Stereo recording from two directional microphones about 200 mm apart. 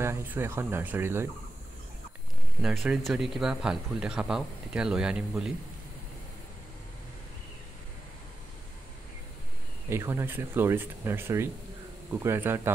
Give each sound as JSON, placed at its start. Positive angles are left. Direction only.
{"t": 0.0, "sound": "speech", "side_deg": -10}
{"t": 2.6, "sound": "speech", "side_deg": -5}
{"t": 9.8, "sound": "speech", "side_deg": -15}